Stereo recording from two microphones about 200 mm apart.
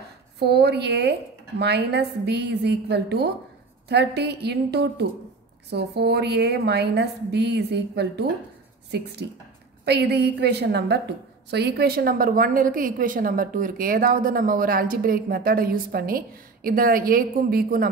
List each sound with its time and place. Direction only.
0.4 s a woman's voice: 55° right (ahead or behind)